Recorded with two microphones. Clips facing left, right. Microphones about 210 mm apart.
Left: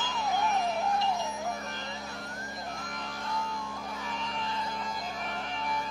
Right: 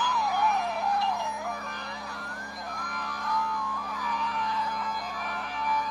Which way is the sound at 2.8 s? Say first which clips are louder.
Right 1 dB; 25° left (ahead or behind).